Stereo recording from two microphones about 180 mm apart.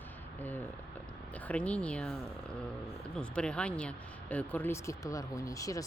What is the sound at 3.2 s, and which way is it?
Speech, 5° left (ahead or behind).